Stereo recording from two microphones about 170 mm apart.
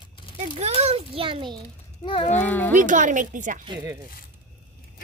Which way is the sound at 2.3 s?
10° left (ahead or behind).